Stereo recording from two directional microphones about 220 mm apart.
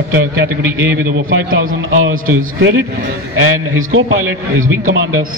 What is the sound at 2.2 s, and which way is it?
A man's voice, 70° right (ahead or behind).